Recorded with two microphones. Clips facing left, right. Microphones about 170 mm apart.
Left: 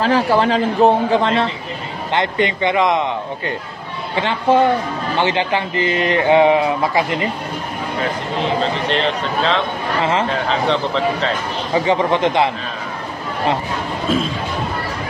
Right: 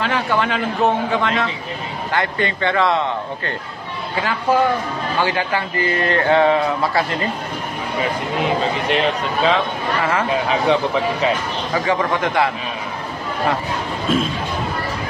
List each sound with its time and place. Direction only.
0.0 s a man's voice: 35° left (ahead or behind)
2.1 s a man's voice: 20° left (ahead or behind)
8.8 s speech: 10° right (ahead or behind)
11.7 s a man's voice: 20° left (ahead or behind)
14.1 s speech: centre (ahead or behind)